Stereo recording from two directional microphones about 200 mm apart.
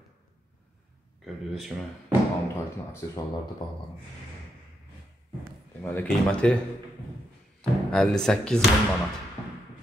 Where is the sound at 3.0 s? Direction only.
15° left (ahead or behind).